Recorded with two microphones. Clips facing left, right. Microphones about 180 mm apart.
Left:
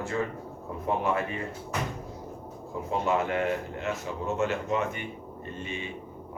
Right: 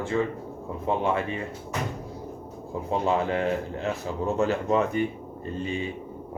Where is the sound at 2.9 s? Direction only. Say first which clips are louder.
Right 2 dB; 30° right (ahead or behind).